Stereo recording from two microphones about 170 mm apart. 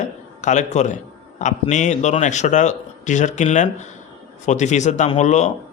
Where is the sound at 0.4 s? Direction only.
45° left (ahead or behind).